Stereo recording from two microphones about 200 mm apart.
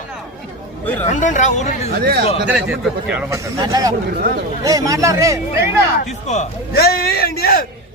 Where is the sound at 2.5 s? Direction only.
5° right (ahead or behind).